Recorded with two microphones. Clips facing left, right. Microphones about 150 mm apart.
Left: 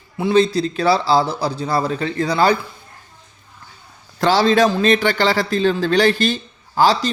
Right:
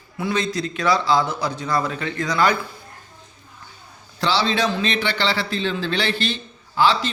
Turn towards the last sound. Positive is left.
turn(degrees=40)  # may be behind; listen again after turning